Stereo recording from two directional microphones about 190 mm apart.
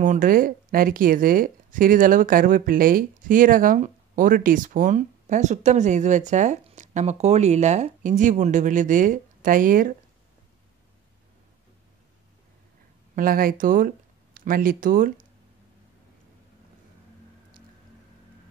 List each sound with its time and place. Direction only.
0.0 s speech: 45° right (ahead or behind)
13.1 s speech: 50° right (ahead or behind)